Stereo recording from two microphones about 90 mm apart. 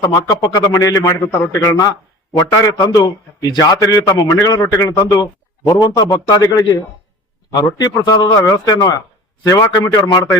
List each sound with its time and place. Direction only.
0.0 s a man's voice: 45° left (ahead or behind)